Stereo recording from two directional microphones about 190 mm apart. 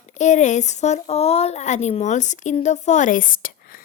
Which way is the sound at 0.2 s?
40° left (ahead or behind).